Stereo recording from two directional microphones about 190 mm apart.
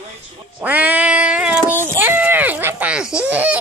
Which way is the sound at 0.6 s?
10° right (ahead or behind).